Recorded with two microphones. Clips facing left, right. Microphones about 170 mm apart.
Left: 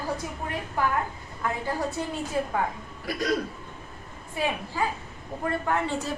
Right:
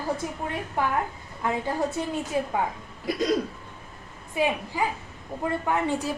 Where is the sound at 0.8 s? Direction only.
25° right (ahead or behind).